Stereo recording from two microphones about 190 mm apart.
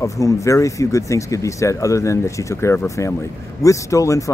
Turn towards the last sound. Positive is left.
turn(degrees=15)  # may be behind; listen again after turning